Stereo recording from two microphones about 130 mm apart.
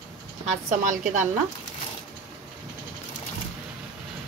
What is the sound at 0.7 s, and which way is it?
Speech, 80° right.